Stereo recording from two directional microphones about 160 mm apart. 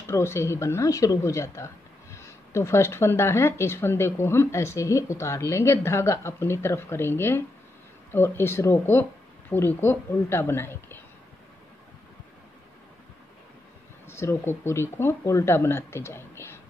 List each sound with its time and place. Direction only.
0.1 s speech: 15° left (ahead or behind)
14.0 s speech: 15° left (ahead or behind)